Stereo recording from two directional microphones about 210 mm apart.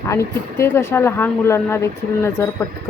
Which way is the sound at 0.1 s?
15° left (ahead or behind).